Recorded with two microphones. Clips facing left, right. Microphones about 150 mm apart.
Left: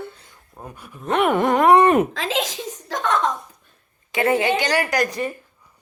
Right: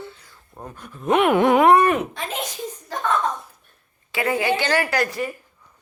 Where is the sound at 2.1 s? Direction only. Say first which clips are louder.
Left 4 dB; 90° left.